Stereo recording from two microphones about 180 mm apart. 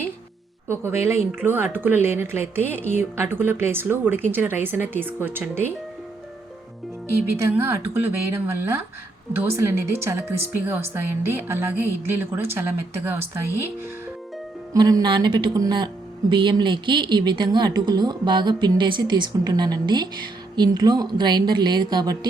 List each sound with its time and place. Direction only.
0.7 s a woman's voice: 15° right (ahead or behind)
7.3 s a woman's voice: 15° right (ahead or behind)
14.7 s speech: 20° right (ahead or behind)